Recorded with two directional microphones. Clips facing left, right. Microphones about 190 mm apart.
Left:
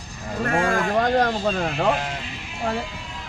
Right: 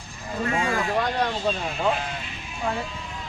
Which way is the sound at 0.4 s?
55° left (ahead or behind).